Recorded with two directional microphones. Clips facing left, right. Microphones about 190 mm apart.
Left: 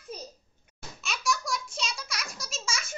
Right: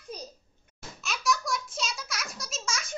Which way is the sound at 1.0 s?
Centre (ahead or behind).